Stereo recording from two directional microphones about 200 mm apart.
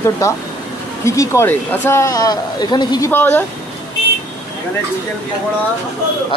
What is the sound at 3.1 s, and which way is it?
Speech, 10° left (ahead or behind).